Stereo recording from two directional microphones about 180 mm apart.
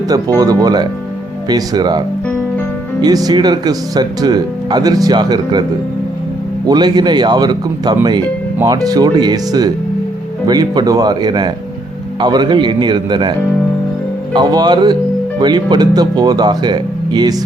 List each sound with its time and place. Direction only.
0.1 s speech: 20° right (ahead or behind)
3.0 s speech: 20° right (ahead or behind)
6.7 s speech: 25° right (ahead or behind)
14.3 s speech: 20° right (ahead or behind)